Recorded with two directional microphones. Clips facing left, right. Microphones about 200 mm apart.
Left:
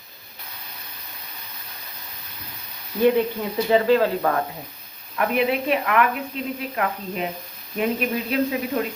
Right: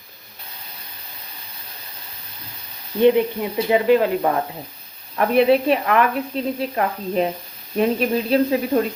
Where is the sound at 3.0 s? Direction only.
20° right (ahead or behind).